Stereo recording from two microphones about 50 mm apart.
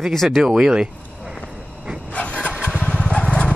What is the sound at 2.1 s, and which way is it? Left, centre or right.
Vehicle, left.